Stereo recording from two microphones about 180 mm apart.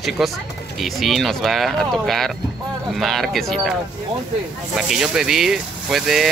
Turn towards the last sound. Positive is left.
turn(degrees=0)  # may be behind; listen again after turning